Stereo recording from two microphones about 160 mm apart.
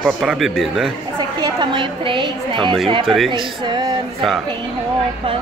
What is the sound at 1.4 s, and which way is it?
A woman's voice, 30° right (ahead or behind).